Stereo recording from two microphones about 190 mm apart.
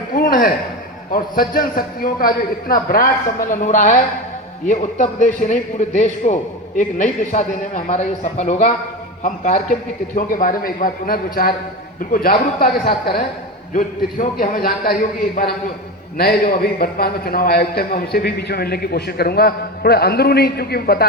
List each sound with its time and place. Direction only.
0.1 s a sound: 50° left (ahead or behind)
1.1 s a man's voice: 50° left (ahead or behind)
16.1 s a man's voice: 55° left (ahead or behind)